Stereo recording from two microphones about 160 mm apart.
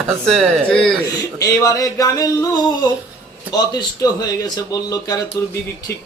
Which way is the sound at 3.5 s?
25° left (ahead or behind).